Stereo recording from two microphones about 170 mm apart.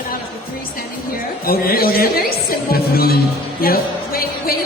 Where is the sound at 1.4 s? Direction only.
60° left (ahead or behind).